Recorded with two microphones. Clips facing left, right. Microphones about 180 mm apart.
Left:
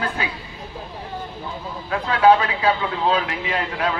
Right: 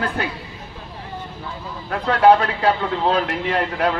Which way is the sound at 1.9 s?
55° right (ahead or behind).